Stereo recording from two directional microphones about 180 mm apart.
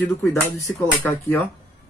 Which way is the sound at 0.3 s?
15° left (ahead or behind).